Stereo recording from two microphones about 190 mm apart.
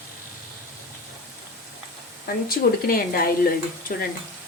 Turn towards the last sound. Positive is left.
turn(degrees=50)  # may be behind; listen again after turning